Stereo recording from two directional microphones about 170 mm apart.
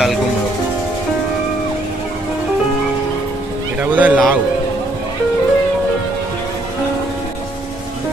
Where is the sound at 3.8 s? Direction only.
10° right (ahead or behind).